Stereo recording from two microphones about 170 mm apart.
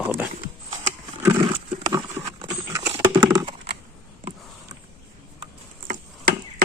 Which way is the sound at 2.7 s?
20° right (ahead or behind).